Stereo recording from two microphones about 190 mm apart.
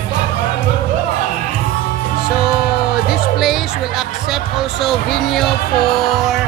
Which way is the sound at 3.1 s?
Centre (ahead or behind).